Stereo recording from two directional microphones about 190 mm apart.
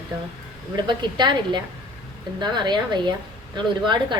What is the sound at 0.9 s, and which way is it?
A woman's voice, 25° right (ahead or behind).